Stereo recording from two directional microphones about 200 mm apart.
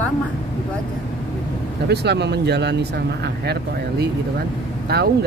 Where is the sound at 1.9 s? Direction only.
55° right (ahead or behind).